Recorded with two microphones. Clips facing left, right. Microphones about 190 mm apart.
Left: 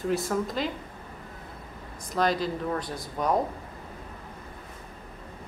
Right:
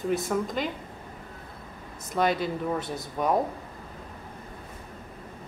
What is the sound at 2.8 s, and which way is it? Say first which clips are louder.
Speech: right 2 dB; 25° right (ahead or behind).